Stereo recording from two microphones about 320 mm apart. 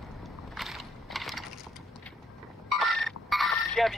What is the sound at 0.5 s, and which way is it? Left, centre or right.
Mechanisms, centre.